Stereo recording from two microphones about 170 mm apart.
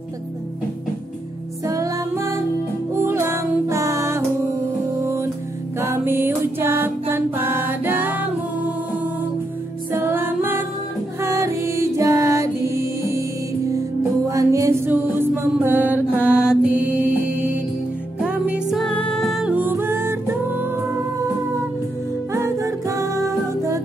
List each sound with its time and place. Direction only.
1.7 s music: 20° right (ahead or behind)
9.9 s music: 15° right (ahead or behind)
14.3 s mantra: 15° right (ahead or behind)
16.3 s music: 5° right (ahead or behind)
22.3 s music: 15° right (ahead or behind)